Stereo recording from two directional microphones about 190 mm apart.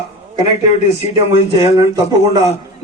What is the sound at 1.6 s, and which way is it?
Speech, 20° right (ahead or behind).